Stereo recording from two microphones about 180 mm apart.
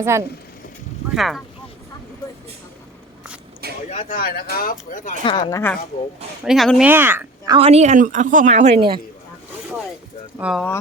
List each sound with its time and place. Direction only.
0.0 s speech: 15° right (ahead or behind)
1.1 s speech: centre (ahead or behind)
3.8 s speech: 45° left (ahead or behind)
5.2 s speech: 25° left (ahead or behind)
6.4 s speech: centre (ahead or behind)
7.4 s speech: 30° right (ahead or behind)
10.3 s speech: 5° right (ahead or behind)